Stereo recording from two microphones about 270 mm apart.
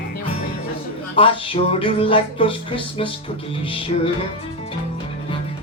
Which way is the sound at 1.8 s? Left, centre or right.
Centre.